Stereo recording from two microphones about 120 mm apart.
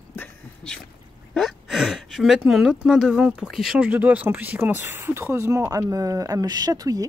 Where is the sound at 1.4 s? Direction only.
Centre (ahead or behind).